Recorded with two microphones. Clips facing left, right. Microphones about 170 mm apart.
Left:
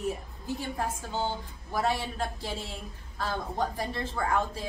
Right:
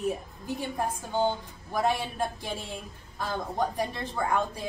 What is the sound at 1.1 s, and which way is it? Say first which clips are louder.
A woman's voice: right 7 dB; 15° right (ahead or behind).